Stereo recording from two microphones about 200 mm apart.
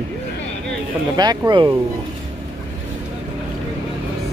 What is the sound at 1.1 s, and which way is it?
Speech, 20° right (ahead or behind).